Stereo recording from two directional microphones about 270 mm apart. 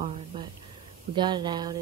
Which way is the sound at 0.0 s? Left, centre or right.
Right.